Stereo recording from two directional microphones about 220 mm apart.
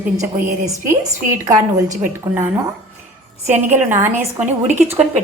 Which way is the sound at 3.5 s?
10° right (ahead or behind).